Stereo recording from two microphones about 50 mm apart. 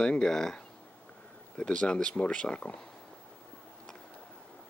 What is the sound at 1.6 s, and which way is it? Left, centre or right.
Speech, centre.